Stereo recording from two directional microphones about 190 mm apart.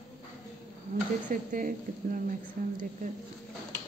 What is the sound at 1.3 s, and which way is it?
Speech, 45° right (ahead or behind).